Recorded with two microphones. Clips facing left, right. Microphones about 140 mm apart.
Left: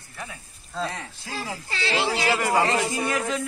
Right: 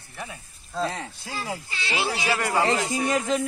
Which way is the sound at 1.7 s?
90° left.